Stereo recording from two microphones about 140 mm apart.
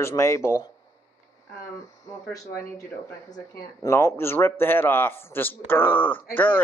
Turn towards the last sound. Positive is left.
turn(degrees=15)  # may be behind; listen again after turning